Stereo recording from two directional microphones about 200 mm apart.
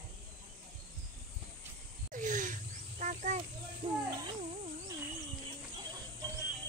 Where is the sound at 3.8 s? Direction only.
25° right (ahead or behind).